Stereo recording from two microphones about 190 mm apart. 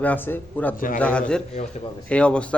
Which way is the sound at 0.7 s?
45° left (ahead or behind).